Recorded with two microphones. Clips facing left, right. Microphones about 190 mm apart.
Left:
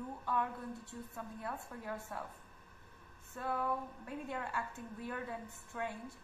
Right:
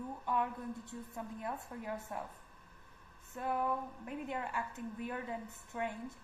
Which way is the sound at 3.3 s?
20° right (ahead or behind).